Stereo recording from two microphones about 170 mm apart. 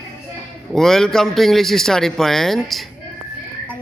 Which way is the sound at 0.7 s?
Centre (ahead or behind).